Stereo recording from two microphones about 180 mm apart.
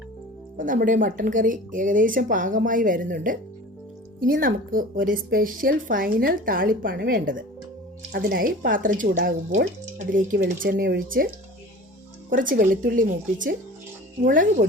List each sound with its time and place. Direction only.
0.5 s speech: 50° right (ahead or behind)
12.3 s speech: 50° right (ahead or behind)